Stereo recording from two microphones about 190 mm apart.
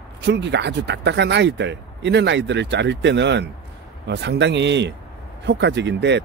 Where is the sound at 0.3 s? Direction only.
65° right (ahead or behind).